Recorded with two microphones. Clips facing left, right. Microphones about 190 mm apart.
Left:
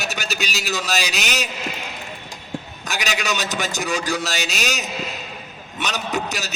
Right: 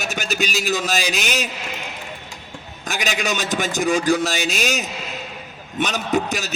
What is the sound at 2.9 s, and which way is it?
A man's voice, 50° right (ahead or behind).